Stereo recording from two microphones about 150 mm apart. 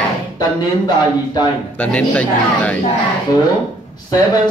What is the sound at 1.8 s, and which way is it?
Speech, 10° left (ahead or behind).